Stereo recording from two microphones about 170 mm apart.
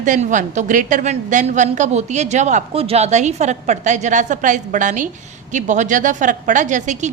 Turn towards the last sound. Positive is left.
turn(degrees=-45)  # may be behind; listen again after turning